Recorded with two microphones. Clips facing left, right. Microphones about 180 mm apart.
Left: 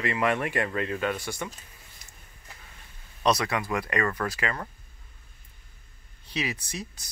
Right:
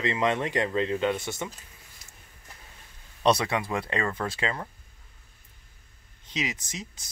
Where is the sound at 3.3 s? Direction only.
25° right (ahead or behind).